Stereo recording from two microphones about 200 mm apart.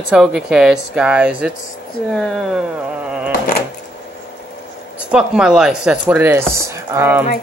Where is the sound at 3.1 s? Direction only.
5° right (ahead or behind).